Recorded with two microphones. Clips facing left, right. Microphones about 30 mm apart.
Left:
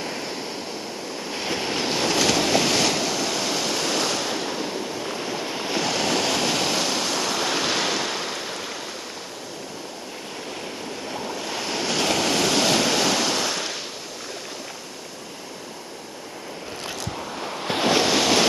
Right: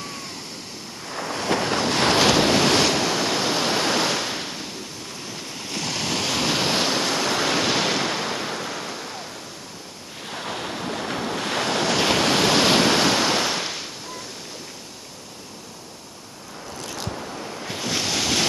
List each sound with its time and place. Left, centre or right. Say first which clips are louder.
0.0 s waves: left 4 dB; centre
2.1 s waves: right 2 dB; right
4.3 s waves: left 3 dB; centre
5.0 s waves: left 6 dB; left; by 6.7 s centre
6.7 s waves: right 2 dB; right; by 8.7 s centre
10.4 s waves: right 6 dB; right
11.9 s waves: right 1 dB; centre
17.6 s waves: left 9 dB; left
17.9 s waves: left 3 dB; centre